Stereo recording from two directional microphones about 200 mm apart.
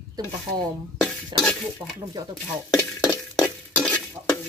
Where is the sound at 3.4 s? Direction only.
5° left (ahead or behind).